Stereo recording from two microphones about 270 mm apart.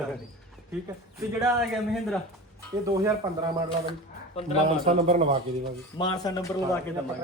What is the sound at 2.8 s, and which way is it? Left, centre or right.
Speech, centre.